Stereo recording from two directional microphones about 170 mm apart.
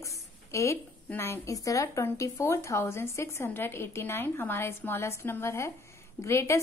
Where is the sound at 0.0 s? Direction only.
15° left (ahead or behind).